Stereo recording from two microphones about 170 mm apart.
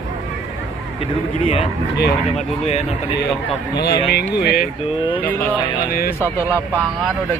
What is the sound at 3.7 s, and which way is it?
Speech, 70° left (ahead or behind).